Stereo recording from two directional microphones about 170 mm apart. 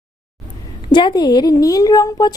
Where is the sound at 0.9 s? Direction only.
25° left (ahead or behind).